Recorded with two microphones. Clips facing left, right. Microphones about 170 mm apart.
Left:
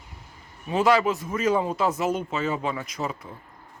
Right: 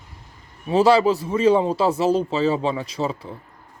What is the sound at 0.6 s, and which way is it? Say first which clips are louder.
Speech: right 5 dB; 30° right (ahead or behind).